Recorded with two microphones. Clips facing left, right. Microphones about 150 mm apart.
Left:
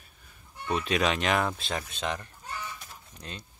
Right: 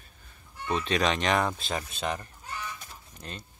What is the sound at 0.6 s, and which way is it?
Speech, 10° left (ahead or behind).